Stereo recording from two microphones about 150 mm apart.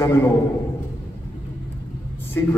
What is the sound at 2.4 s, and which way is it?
Speech, 15° left (ahead or behind).